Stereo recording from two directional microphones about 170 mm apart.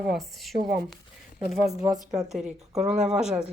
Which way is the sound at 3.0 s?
5° right (ahead or behind).